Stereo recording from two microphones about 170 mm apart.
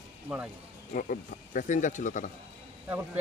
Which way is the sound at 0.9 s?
50° left (ahead or behind).